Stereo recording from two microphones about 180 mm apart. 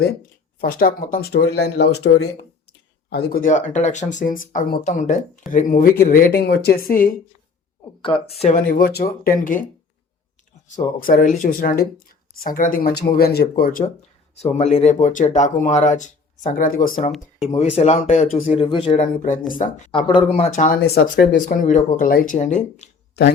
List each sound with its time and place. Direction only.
0.6 s speech: 55° left (ahead or behind)
8.0 s speech: 30° left (ahead or behind)
8.5 s speech: 50° left (ahead or behind)
9.4 s speech: 45° left (ahead or behind)
11.0 s speech: 50° left (ahead or behind)
14.3 s speech: 35° left (ahead or behind)
17.5 s speech: 35° left (ahead or behind)
19.9 s speech: 30° left (ahead or behind)
23.2 s speech: 65° left (ahead or behind)